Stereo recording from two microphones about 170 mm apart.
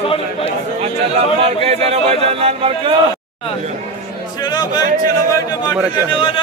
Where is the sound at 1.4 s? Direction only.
35° right (ahead or behind).